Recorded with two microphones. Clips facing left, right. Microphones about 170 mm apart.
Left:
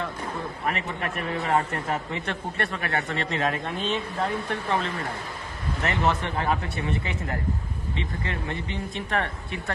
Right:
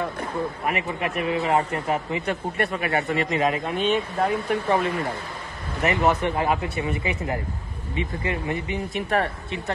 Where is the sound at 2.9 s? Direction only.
20° right (ahead or behind).